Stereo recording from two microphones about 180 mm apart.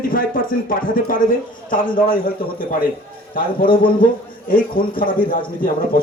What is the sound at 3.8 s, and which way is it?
Speech, 50° left (ahead or behind).